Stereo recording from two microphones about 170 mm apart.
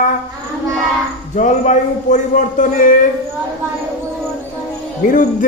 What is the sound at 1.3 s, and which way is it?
A man's voice, 45° left (ahead or behind).